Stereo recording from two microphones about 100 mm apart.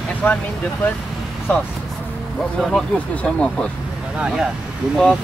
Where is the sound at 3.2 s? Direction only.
5° left (ahead or behind).